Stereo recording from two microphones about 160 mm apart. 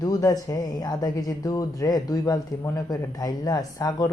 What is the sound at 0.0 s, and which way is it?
A woman's voice, 20° left (ahead or behind).